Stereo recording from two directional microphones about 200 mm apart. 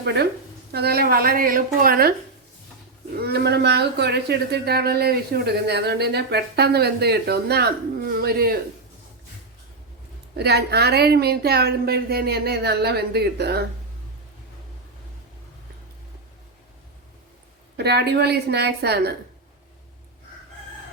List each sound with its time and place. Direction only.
0.0 s speech: 55° right (ahead or behind)
3.2 s speech: 55° right (ahead or behind)
10.3 s speech: 55° right (ahead or behind)
17.7 s a woman's voice: 55° right (ahead or behind)